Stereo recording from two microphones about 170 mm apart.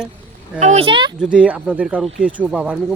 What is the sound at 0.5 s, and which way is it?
Speech, 40° right (ahead or behind).